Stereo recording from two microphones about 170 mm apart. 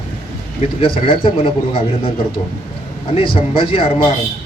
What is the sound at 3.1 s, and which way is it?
Speech, 35° left (ahead or behind).